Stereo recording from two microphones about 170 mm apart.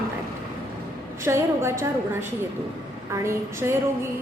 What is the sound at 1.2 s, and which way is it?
Speech, 15° right (ahead or behind).